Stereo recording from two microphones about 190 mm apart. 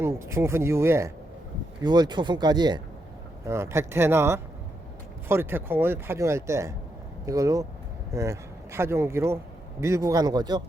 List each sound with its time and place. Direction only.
0.0 s speech: 15° right (ahead or behind)